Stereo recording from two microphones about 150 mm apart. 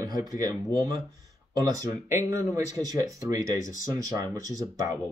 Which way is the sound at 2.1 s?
15° right (ahead or behind).